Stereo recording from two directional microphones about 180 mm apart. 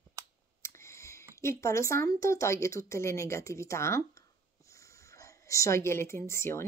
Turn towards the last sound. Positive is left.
turn(degrees=15)  # may be behind; listen again after turning